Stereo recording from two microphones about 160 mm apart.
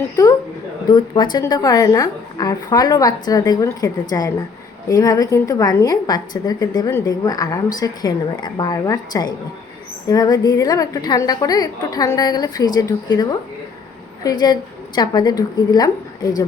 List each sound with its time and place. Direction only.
0.9 s a woman's voice: 30° left (ahead or behind)
14.3 s a woman's voice: 25° left (ahead or behind)